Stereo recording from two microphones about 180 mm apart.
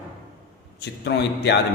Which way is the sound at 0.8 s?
65° left (ahead or behind).